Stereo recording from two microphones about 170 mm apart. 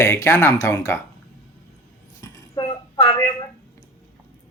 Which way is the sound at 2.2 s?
25° left (ahead or behind).